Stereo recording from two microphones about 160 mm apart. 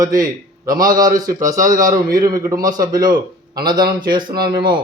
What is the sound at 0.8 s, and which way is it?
Speech, 60° right (ahead or behind).